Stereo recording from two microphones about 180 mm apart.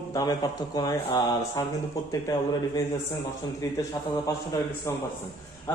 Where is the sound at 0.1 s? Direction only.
20° left (ahead or behind).